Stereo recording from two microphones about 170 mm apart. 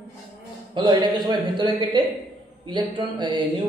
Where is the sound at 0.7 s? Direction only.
25° right (ahead or behind).